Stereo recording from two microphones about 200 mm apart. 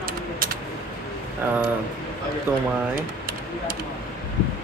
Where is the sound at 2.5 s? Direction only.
10° right (ahead or behind).